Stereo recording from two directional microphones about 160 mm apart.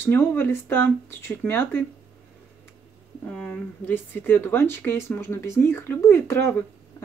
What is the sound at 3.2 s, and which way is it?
Speech, 5° left (ahead or behind).